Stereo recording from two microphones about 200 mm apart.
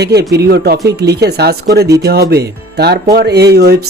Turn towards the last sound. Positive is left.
turn(degrees=-55)  # may be behind; listen again after turning